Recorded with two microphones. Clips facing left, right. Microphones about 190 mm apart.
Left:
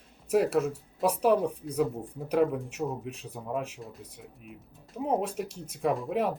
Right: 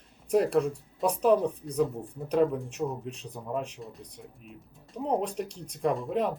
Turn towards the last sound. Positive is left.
turn(degrees=5)  # may be behind; listen again after turning